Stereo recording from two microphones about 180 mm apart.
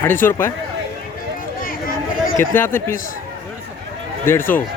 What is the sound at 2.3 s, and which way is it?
Speech, 15° left (ahead or behind).